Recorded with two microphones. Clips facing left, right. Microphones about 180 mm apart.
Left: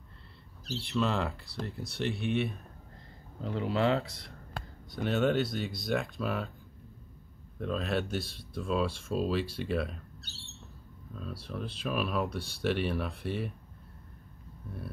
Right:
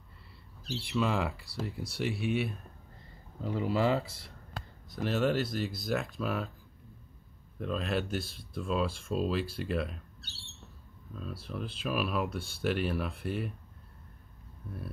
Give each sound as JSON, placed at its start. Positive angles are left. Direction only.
{"t": 0.8, "sound": "speech", "side_deg": -5}
{"t": 4.6, "sound": "a sound", "side_deg": 55}
{"t": 4.9, "sound": "speech", "side_deg": 0}
{"t": 7.5, "sound": "speech", "side_deg": 0}
{"t": 11.1, "sound": "speech", "side_deg": 0}